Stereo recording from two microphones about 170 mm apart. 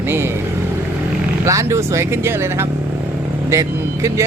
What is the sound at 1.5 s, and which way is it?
Speech, 15° right (ahead or behind).